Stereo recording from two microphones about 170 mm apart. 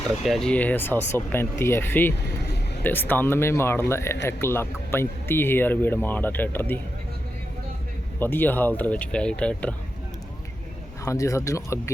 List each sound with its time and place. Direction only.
0.3 s speech: 5° left (ahead or behind)
8.2 s speech: 10° left (ahead or behind)
11.0 s speech: 20° left (ahead or behind)